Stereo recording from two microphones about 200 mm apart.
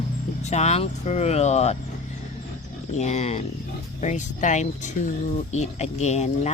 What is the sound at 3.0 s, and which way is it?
Speech, 35° left (ahead or behind).